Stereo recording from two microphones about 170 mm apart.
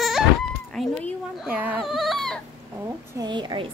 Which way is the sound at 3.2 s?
25° right (ahead or behind).